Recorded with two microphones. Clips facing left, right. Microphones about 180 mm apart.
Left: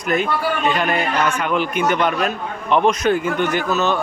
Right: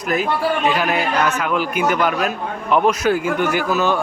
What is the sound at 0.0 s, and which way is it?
A man's voice, 5° right (ahead or behind).